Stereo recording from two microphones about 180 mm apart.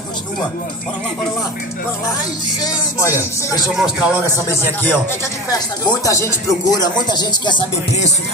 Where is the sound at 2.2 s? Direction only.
20° left (ahead or behind).